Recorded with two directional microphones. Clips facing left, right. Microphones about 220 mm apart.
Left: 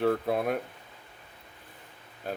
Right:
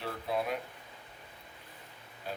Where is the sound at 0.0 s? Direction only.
55° left (ahead or behind).